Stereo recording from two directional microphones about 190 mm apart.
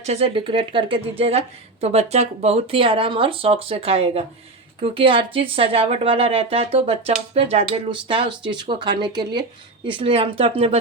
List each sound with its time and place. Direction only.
0.0 s speech: 35° right (ahead or behind)